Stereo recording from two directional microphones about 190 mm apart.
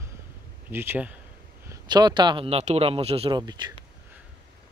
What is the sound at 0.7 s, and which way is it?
Speech, 10° right (ahead or behind).